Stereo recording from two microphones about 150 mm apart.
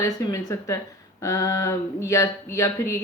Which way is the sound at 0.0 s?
25° left (ahead or behind).